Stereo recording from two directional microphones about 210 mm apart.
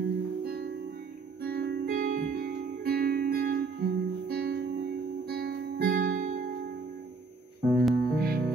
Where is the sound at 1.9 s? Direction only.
45° right (ahead or behind).